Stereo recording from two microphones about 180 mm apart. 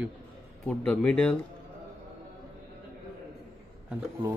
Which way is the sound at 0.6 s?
5° left (ahead or behind).